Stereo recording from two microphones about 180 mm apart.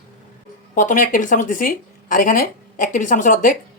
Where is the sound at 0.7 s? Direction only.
45° left (ahead or behind).